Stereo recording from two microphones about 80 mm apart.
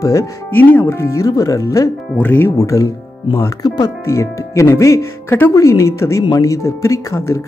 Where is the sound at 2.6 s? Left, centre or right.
Left.